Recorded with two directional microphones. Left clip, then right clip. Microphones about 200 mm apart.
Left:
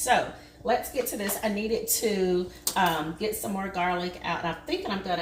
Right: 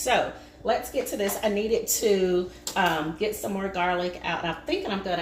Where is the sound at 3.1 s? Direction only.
15° right (ahead or behind).